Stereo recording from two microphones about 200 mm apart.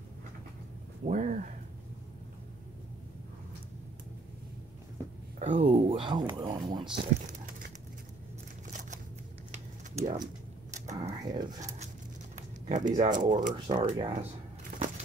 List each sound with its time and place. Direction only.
1.0 s speech: 40° right (ahead or behind)
5.4 s speech: 35° right (ahead or behind); by 6.9 s 20° right (ahead or behind)
7.0 s crumpling: 40° right (ahead or behind)
10.0 s speech: 20° right (ahead or behind)
11.0 s a sound: 20° right (ahead or behind)
12.9 s speech: 40° right (ahead or behind)
13.7 s speech: 25° right (ahead or behind)